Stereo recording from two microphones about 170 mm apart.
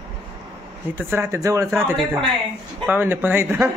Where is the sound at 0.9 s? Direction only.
15° right (ahead or behind).